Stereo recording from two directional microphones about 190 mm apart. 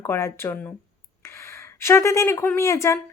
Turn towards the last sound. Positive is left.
turn(degrees=15)  # may be behind; listen again after turning